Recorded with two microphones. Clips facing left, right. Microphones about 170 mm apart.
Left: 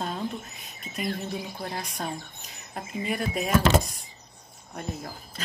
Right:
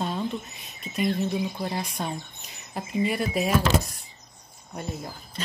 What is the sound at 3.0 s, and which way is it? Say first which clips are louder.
Speech: right 4 dB; centre (ahead or behind).